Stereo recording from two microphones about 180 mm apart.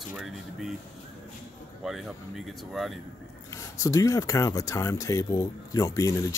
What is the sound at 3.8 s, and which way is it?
Speech, 15° left (ahead or behind).